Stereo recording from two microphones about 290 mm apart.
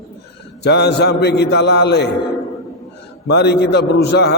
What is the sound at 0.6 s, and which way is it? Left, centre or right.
A man's voice, left.